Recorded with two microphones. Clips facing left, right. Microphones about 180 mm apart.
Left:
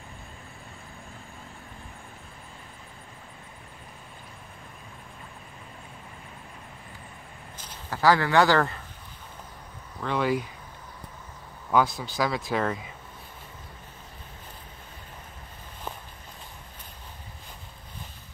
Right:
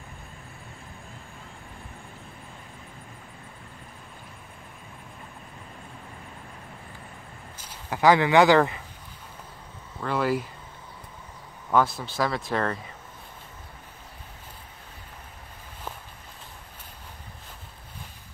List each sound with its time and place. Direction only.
7.5 s speech: 10° right (ahead or behind)
9.9 s speech: 5° right (ahead or behind)
11.7 s speech: centre (ahead or behind)